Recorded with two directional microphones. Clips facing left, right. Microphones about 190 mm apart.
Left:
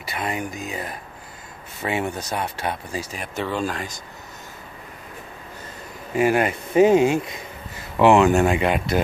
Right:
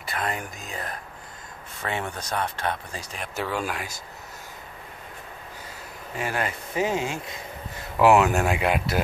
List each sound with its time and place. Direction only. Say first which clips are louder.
0.0 s speech: left 3 dB; 5° left (ahead or behind)
6.1 s speech: left 10 dB; 15° left (ahead or behind)
8.0 s speech: left 3 dB; 5° right (ahead or behind)